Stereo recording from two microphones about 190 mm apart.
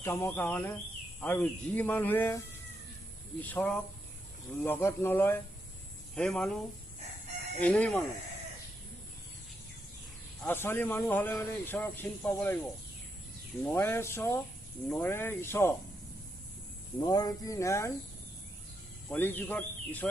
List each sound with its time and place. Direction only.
0.0 s speech: 10° left (ahead or behind)
3.4 s speech: 10° left (ahead or behind)
7.6 s speech: 5° left (ahead or behind)
10.4 s speech: 10° left (ahead or behind)
17.0 s speech: 20° left (ahead or behind)
19.0 s speech: 10° left (ahead or behind)